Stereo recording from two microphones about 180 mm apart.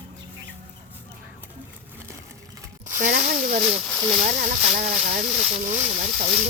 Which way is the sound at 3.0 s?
50° right (ahead or behind).